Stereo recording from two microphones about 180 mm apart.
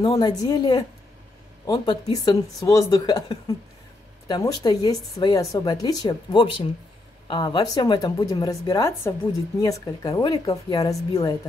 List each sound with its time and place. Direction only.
0.0 s a woman's voice: 25° left (ahead or behind)